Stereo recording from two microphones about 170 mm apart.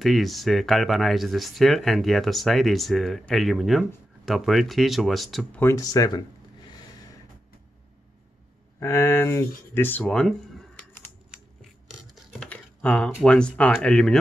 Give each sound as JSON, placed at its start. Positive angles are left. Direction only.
{"t": 0.0, "sound": "speech", "side_deg": 0}
{"t": 5.6, "sound": "a sound", "side_deg": 20}
{"t": 8.7, "sound": "speech", "side_deg": 15}
{"t": 12.3, "sound": "typing", "side_deg": 5}
{"t": 13.2, "sound": "speech", "side_deg": 5}